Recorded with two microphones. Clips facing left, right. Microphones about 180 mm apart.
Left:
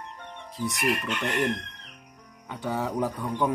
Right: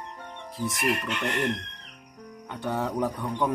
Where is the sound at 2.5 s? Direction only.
Centre (ahead or behind).